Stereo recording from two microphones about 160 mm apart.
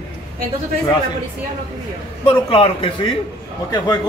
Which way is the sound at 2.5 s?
35° left (ahead or behind).